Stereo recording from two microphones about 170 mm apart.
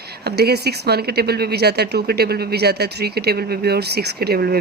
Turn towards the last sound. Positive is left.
turn(degrees=-65)  # may be behind; listen again after turning